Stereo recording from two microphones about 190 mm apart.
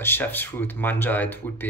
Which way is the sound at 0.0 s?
10° left (ahead or behind).